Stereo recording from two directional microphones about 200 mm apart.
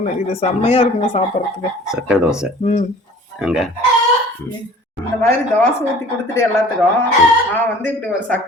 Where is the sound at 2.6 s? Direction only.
35° left (ahead or behind).